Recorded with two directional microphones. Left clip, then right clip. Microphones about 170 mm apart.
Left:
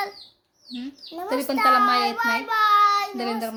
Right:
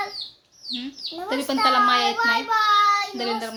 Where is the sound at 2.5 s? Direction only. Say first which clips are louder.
Left 2 dB; 35° left (ahead or behind).